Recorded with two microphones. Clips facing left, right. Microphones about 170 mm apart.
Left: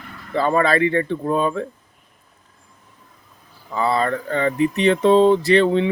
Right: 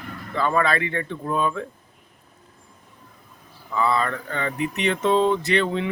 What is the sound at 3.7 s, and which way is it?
Mantra, 35° left (ahead or behind).